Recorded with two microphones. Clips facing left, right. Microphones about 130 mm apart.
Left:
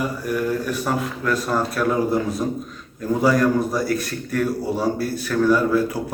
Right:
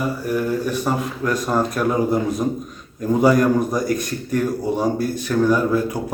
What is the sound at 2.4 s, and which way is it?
Speech, 25° right (ahead or behind).